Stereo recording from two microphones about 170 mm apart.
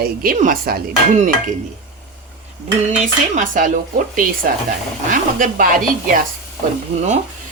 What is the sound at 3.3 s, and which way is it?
Speech, 50° right (ahead or behind).